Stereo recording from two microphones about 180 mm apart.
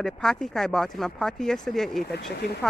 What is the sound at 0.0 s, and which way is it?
Speech, 5° left (ahead or behind).